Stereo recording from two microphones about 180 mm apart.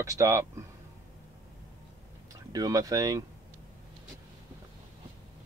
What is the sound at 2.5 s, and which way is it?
Speech, 20° right (ahead or behind).